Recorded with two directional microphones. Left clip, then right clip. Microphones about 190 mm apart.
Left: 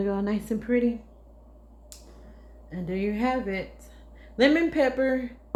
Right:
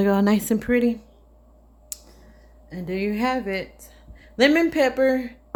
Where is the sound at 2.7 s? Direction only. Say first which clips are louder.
Right 3 dB; 40° right (ahead or behind).